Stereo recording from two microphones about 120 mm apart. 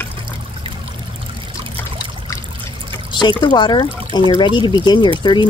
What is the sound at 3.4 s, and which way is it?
Speech, 40° left (ahead or behind).